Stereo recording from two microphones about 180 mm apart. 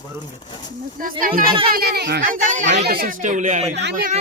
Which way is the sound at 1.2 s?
50° right (ahead or behind).